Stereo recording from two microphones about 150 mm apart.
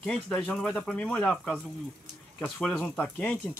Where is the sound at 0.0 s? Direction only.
10° left (ahead or behind).